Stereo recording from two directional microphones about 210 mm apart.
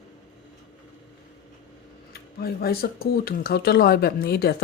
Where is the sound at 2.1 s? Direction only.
45° left (ahead or behind).